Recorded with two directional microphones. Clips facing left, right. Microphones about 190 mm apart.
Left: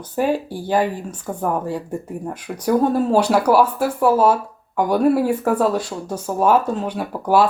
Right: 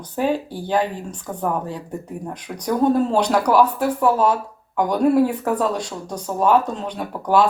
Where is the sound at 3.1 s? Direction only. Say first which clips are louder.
Left 2 dB; 10° left (ahead or behind).